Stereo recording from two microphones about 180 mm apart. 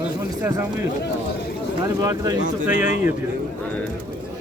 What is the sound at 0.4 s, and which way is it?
Speech, 15° right (ahead or behind).